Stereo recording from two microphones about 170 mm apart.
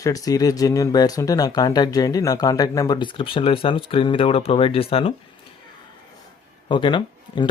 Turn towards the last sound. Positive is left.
turn(degrees=30)  # may be behind; listen again after turning